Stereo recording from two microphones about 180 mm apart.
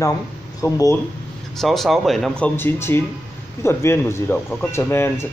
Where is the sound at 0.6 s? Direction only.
15° left (ahead or behind).